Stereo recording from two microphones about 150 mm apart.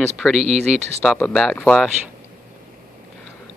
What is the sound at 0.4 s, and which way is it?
Speech, 45° right (ahead or behind).